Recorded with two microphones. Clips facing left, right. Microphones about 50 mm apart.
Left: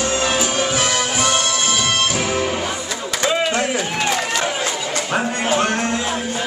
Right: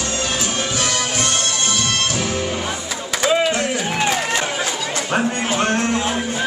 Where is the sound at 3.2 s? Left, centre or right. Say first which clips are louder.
Right 2 dB; centre.